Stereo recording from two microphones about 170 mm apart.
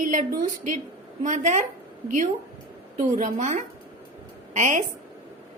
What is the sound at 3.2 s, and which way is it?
A woman's voice, 45° right (ahead or behind).